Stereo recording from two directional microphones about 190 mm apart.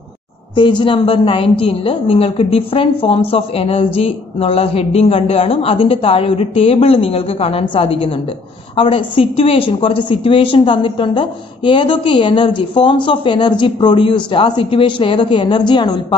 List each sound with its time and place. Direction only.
0.6 s a woman's voice: 25° left (ahead or behind)